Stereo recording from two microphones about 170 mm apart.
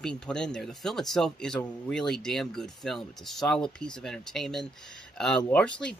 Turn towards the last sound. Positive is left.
turn(degrees=5)  # may be behind; listen again after turning